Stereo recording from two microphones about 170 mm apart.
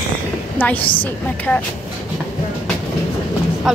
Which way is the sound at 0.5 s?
10° left (ahead or behind).